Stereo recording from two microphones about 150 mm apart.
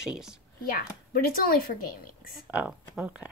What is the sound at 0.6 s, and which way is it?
Speech, 75° left (ahead or behind).